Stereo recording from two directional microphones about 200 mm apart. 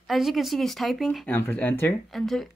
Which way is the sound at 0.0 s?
Centre (ahead or behind).